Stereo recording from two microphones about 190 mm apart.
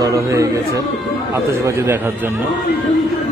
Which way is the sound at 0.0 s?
15° right (ahead or behind).